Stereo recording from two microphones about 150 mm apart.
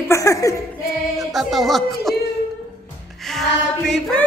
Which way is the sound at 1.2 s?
Centre (ahead or behind).